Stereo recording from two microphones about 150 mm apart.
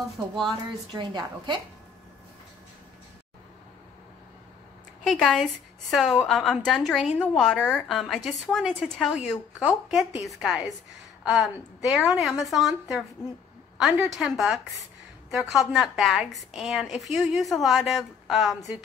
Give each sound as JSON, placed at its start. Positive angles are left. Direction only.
{"t": 0.5, "sound": "a woman's voice", "side_deg": -30}
{"t": 5.0, "sound": "a woman's voice", "side_deg": 5}
{"t": 14.1, "sound": "a woman's voice", "side_deg": 0}